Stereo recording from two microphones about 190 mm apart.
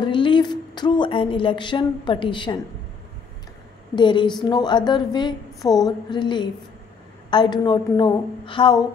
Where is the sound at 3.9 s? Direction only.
25° left (ahead or behind).